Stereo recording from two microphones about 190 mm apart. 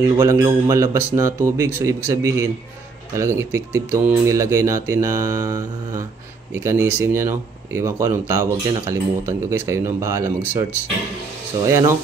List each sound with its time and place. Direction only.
0.0 s speech: 20° right (ahead or behind)
11.6 s speech: 15° right (ahead or behind)